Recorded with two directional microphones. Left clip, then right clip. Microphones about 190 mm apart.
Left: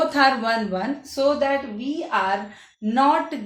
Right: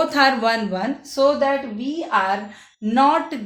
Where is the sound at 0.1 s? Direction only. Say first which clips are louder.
Right 2 dB; 35° right (ahead or behind).